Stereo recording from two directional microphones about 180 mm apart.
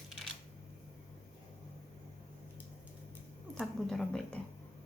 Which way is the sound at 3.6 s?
5° left (ahead or behind).